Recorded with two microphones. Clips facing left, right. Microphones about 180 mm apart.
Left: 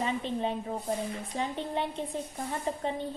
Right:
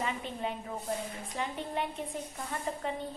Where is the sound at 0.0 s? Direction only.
25° left (ahead or behind).